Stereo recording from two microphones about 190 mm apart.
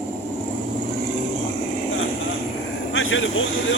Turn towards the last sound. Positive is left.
turn(degrees=90)